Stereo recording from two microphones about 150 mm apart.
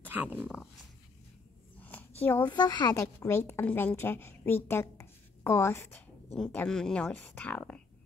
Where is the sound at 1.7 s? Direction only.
10° left (ahead or behind).